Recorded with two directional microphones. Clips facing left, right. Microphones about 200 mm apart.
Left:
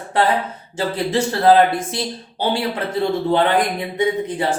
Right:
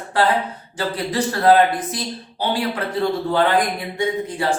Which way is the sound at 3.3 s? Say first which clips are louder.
Left 1 dB; 20° left (ahead or behind).